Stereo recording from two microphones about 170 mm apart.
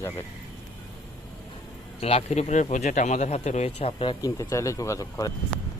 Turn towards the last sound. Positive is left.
turn(degrees=20)  # may be behind; listen again after turning